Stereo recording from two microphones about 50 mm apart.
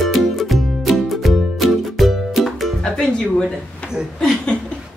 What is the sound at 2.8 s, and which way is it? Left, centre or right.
Speech, centre.